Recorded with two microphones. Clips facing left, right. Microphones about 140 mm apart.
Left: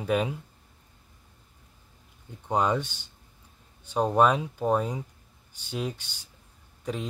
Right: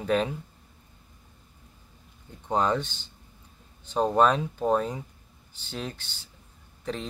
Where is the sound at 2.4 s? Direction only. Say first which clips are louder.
Even; 10° left (ahead or behind).